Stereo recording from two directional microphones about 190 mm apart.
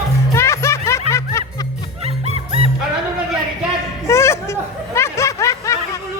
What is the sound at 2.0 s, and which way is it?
Music, 30° right (ahead or behind).